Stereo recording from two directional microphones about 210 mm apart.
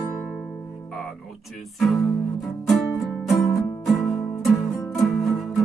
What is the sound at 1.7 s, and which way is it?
Music, centre (ahead or behind).